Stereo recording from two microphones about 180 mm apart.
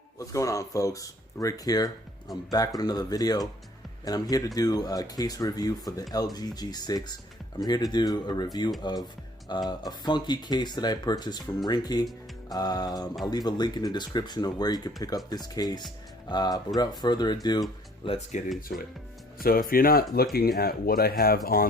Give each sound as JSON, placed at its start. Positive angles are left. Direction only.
{"t": 0.2, "sound": "speech", "side_deg": 20}
{"t": 18.0, "sound": "speech", "side_deg": 35}
{"t": 18.4, "sound": "speech", "side_deg": 0}
{"t": 19.4, "sound": "speech", "side_deg": 55}